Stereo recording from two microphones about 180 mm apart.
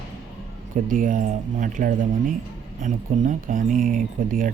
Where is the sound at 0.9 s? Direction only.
50° right (ahead or behind).